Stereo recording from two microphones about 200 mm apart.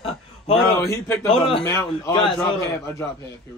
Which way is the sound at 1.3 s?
25° left (ahead or behind).